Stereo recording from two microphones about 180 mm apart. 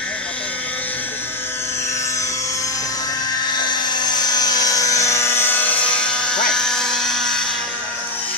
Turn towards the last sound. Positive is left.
turn(degrees=0)  # may be behind; listen again after turning